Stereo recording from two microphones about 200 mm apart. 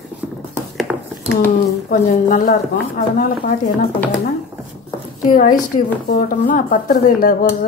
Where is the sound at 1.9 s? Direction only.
45° left (ahead or behind).